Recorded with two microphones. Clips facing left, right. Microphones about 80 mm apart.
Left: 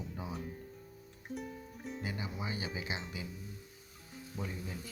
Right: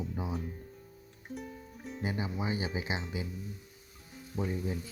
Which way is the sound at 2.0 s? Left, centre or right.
Right.